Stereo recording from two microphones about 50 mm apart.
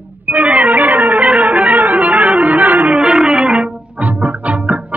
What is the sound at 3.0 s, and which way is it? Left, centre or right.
Music, centre.